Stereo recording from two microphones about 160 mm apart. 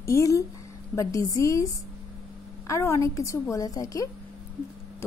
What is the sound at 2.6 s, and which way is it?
A woman's voice, 20° left (ahead or behind).